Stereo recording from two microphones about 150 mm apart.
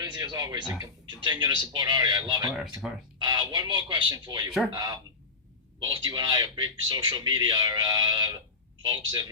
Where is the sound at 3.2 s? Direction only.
25° right (ahead or behind).